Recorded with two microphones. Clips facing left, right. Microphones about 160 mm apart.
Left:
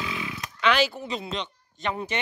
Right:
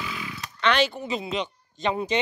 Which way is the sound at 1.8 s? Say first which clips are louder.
Right 4 dB; 20° right (ahead or behind).